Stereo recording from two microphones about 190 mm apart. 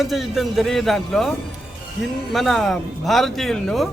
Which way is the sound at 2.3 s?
Centre (ahead or behind).